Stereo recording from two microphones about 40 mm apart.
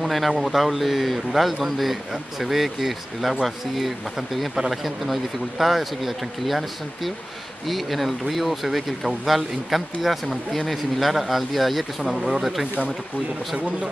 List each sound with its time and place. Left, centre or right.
0.0 s a sound: centre
0.4 s speech: centre
12.0 s speech: centre
12.3 s speech: centre